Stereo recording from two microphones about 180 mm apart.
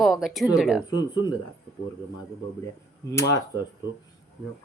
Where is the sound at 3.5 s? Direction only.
15° right (ahead or behind).